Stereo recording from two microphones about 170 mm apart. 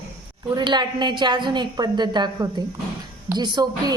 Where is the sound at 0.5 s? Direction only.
25° right (ahead or behind).